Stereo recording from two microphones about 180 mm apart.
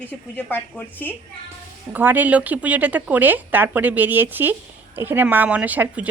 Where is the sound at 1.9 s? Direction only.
10° right (ahead or behind).